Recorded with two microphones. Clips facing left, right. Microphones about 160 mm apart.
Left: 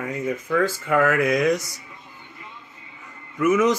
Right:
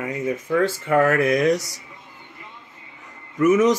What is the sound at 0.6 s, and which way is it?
Speech, 30° right (ahead or behind).